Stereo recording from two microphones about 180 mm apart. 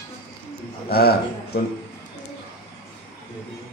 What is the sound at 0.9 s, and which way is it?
Speech, 60° left (ahead or behind).